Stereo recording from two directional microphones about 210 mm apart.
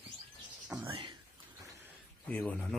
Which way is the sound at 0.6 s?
5° right (ahead or behind).